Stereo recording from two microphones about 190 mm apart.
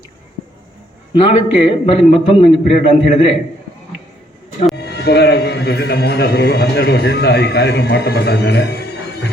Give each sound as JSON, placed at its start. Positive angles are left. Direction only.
{"t": 1.1, "sound": "a man's voice", "side_deg": 30}
{"t": 4.7, "sound": "a man's voice", "side_deg": 60}